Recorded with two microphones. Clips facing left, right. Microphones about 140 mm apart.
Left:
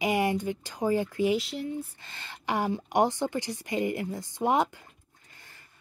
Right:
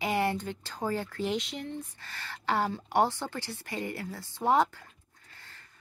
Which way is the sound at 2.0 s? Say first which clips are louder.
Right 2 dB; 20° left (ahead or behind).